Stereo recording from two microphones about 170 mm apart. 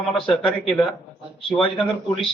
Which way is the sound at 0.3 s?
30° left (ahead or behind).